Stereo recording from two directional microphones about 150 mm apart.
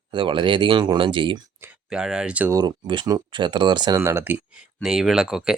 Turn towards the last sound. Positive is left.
turn(degrees=-5)  # may be behind; listen again after turning